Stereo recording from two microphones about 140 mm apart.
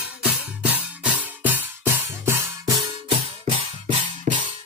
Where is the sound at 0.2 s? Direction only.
10° right (ahead or behind).